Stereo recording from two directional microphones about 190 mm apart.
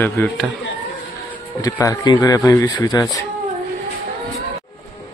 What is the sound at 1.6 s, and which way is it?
Speech, 20° left (ahead or behind).